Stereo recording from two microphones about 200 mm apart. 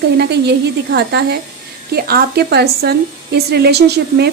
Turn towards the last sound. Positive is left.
turn(degrees=-55)  # may be behind; listen again after turning